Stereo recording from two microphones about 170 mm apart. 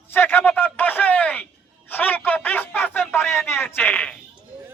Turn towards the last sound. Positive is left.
turn(degrees=10)  # may be behind; listen again after turning